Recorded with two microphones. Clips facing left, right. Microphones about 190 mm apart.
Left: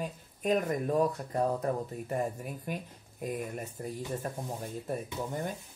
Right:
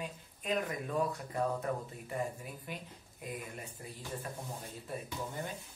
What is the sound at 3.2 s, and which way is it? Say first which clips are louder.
Speech: left 8 dB; 45° left (ahead or behind).